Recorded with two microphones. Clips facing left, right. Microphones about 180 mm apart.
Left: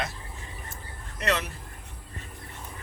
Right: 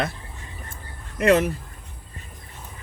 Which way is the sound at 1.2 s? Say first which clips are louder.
Right 11 dB; 50° right (ahead or behind).